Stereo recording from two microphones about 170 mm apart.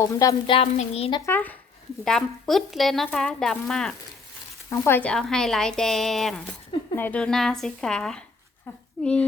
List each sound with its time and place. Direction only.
0.1 s a sound: 20° left (ahead or behind)
0.5 s a woman's voice: 35° left (ahead or behind)
1.2 s speech: 10° left (ahead or behind)
4.7 s speech: 15° left (ahead or behind)